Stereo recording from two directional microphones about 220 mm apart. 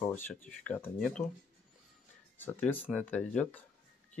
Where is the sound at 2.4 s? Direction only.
10° left (ahead or behind).